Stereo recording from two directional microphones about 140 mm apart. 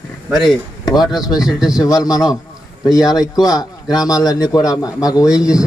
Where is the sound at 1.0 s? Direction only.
30° left (ahead or behind).